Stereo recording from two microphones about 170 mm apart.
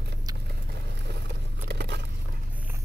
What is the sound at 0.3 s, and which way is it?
Vehicle, 20° right (ahead or behind).